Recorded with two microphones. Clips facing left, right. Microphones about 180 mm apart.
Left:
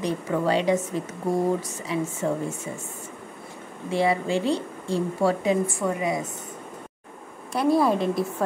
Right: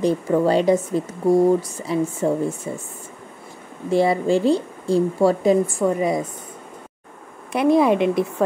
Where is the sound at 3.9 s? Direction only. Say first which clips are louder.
Right 5 dB; 35° right (ahead or behind).